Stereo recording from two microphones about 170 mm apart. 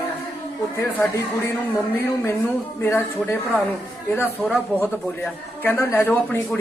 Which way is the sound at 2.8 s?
15° left (ahead or behind).